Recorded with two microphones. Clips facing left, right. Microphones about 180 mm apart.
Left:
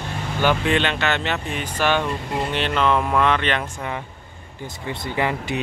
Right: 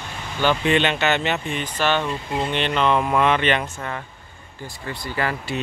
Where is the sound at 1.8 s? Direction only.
10° left (ahead or behind).